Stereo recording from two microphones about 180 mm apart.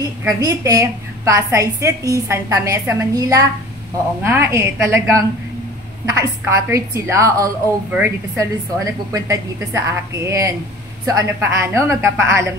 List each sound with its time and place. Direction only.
0.2 s a woman's voice: 15° right (ahead or behind)